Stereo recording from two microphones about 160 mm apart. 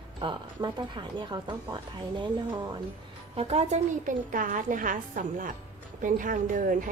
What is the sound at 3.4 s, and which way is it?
A woman's voice, 40° right (ahead or behind).